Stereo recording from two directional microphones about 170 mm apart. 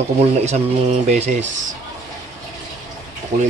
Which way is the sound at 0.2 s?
40° right (ahead or behind).